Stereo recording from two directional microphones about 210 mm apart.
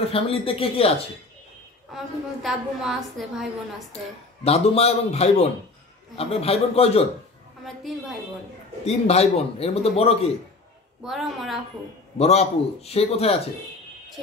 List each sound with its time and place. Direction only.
0.1 s a man's voice: 25° left (ahead or behind)
1.9 s a woman's voice: centre (ahead or behind)
4.5 s a man's voice: 30° left (ahead or behind)
7.6 s a woman's voice: centre (ahead or behind)
8.8 s a man's voice: 30° left (ahead or behind)
11.1 s a woman's voice: centre (ahead or behind)
12.2 s a man's voice: 30° left (ahead or behind)